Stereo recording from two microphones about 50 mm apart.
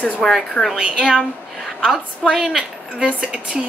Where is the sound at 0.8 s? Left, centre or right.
Centre.